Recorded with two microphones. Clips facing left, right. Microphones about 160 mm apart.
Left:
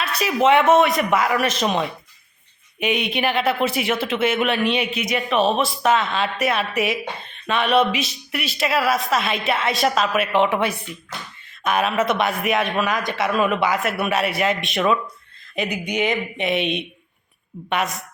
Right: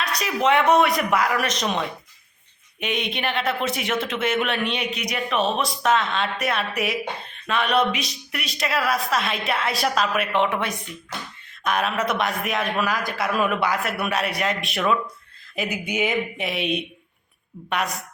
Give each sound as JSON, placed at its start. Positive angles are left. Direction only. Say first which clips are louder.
{"t": 0.2, "sound": "a man's voice", "louder": "left 4 dB", "side_deg": 5}